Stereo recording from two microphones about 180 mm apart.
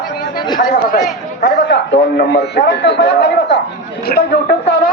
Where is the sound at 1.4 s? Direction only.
80° left.